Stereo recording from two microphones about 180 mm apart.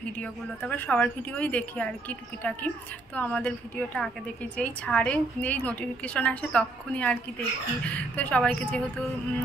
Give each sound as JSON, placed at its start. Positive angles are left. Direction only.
{"t": 0.2, "sound": "a woman's voice", "side_deg": 10}